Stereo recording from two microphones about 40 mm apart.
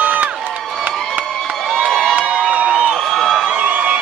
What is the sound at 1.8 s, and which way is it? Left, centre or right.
Crowd, centre.